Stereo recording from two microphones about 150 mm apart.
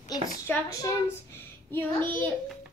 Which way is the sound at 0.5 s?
20° left (ahead or behind).